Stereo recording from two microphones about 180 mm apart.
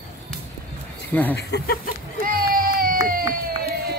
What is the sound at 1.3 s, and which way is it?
Speech, 65° left (ahead or behind).